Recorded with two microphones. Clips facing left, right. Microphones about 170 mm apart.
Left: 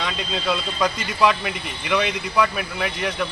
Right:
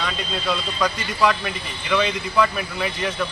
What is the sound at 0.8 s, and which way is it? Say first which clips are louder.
Speech: left 1 dB; 15° left (ahead or behind).